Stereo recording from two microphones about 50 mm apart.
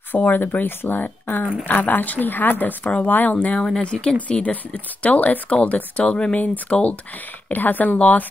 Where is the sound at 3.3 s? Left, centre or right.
Left.